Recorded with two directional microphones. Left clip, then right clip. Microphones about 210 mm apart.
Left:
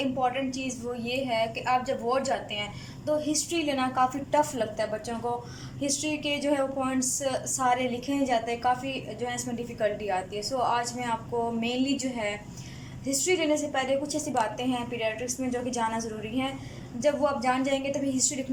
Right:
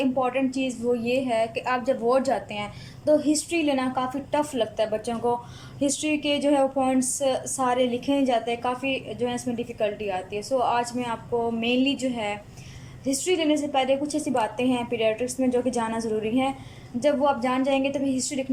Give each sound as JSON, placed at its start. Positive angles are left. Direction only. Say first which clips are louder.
{"t": 0.0, "sound": "a woman's voice", "louder": "right 3 dB", "side_deg": -15}